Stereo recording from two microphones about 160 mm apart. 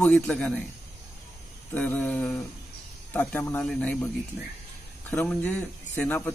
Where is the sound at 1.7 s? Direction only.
10° left (ahead or behind).